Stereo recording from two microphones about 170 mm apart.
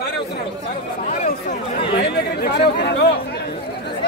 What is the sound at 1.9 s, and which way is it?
Speech, 75° left (ahead or behind).